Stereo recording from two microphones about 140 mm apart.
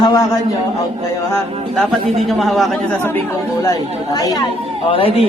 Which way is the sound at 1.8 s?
Centre (ahead or behind).